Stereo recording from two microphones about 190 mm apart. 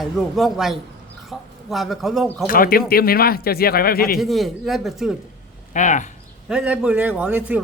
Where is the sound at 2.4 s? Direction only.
50° left (ahead or behind).